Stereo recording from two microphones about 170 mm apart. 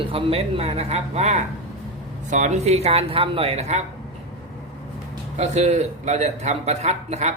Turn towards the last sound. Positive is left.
turn(degrees=-40)  # may be behind; listen again after turning